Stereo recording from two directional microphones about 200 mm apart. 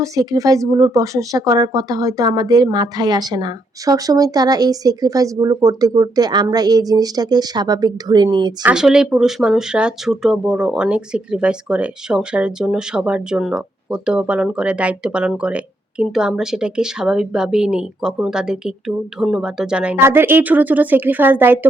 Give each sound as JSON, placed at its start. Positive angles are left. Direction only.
{"t": 0.0, "sound": "speech", "side_deg": -15}
{"t": 8.6, "sound": "speech", "side_deg": -5}